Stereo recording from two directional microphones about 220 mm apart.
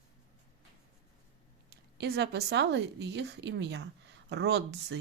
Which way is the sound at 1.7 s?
50° right (ahead or behind).